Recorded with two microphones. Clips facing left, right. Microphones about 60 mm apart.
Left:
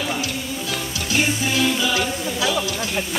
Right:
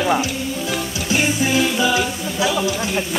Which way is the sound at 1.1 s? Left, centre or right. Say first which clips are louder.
Right 3 dB; centre.